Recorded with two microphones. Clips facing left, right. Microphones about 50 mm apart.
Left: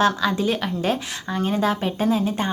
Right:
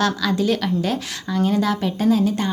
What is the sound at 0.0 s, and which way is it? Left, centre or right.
A woman's voice, left.